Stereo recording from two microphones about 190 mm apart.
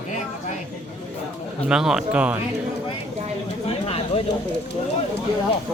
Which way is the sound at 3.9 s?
30° left (ahead or behind).